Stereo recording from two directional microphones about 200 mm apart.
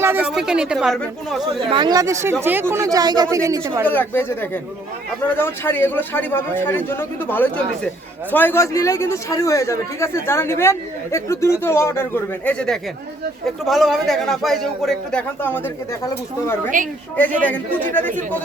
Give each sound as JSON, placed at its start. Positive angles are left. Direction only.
{"t": 0.0, "sound": "speech", "side_deg": -10}
{"t": 1.5, "sound": "speech", "side_deg": -25}
{"t": 3.8, "sound": "a man's voice", "side_deg": 10}
{"t": 16.7, "sound": "a woman's voice", "side_deg": -40}
{"t": 17.4, "sound": "a man's voice", "side_deg": 10}